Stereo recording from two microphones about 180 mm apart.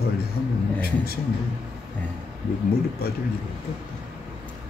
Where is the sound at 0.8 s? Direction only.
55° left (ahead or behind).